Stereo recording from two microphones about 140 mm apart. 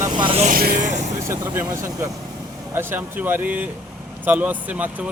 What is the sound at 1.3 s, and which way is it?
Speech, 20° right (ahead or behind).